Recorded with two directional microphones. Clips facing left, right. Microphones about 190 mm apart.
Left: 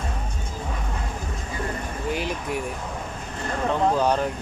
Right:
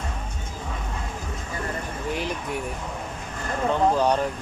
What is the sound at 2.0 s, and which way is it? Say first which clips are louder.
Speech: left 2 dB; centre (ahead or behind).